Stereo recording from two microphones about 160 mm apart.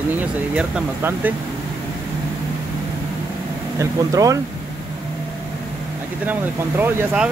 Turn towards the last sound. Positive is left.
turn(degrees=-10)  # may be behind; listen again after turning